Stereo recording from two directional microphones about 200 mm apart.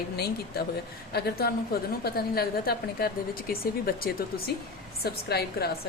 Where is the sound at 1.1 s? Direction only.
50° left (ahead or behind).